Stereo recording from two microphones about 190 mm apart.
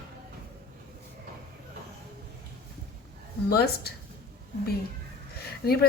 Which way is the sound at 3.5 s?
55° left (ahead or behind).